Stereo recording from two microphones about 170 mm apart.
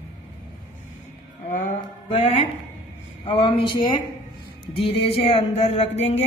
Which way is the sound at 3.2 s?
30° left (ahead or behind).